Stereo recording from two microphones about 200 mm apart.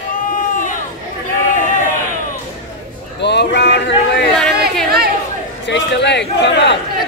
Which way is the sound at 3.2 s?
60° left (ahead or behind).